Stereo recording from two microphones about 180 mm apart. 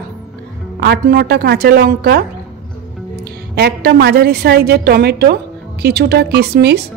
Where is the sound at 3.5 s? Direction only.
65° right (ahead or behind).